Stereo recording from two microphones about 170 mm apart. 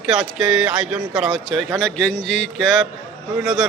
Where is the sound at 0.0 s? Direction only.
Centre (ahead or behind).